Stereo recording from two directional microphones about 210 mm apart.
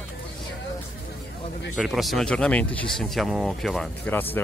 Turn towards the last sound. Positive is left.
turn(degrees=10)  # may be behind; listen again after turning